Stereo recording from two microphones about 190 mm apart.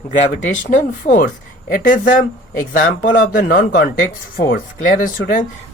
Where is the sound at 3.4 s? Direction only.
50° left (ahead or behind).